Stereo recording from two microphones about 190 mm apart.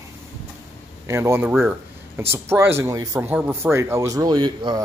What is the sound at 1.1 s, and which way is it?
Speech, 15° right (ahead or behind).